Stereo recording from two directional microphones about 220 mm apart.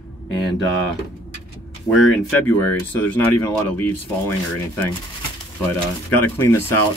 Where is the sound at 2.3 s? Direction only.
10° left (ahead or behind).